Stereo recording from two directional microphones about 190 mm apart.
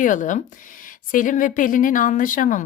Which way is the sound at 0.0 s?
40° left (ahead or behind).